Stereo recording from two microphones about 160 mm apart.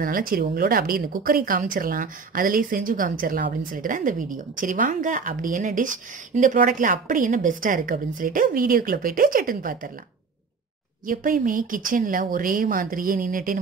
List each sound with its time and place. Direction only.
0.0 s a woman's voice: 60° right (ahead or behind)
11.1 s a woman's voice: 60° right (ahead or behind)